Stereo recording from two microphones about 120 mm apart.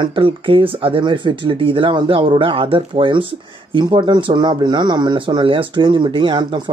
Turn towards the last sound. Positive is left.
turn(degrees=-40)  # may be behind; listen again after turning